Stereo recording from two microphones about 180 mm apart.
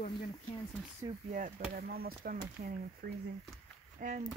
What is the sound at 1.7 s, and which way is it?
Speech, 60° right (ahead or behind).